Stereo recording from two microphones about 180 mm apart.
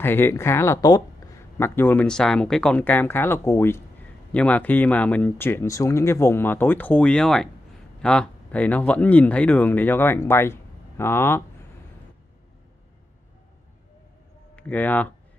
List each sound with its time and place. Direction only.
0.0 s speech: 10° left (ahead or behind)
14.5 s speech: 10° left (ahead or behind)